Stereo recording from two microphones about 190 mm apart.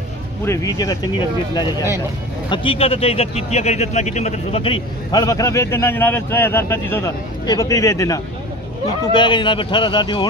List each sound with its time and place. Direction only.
0.5 s a man's voice: 20° left (ahead or behind)